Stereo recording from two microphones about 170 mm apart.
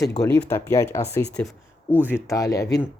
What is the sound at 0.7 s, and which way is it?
Speech, 15° left (ahead or behind).